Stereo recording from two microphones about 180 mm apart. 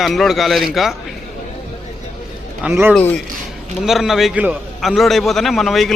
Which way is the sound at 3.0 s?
5° left (ahead or behind).